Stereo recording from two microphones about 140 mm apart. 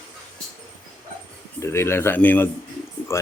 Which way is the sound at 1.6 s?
20° left (ahead or behind).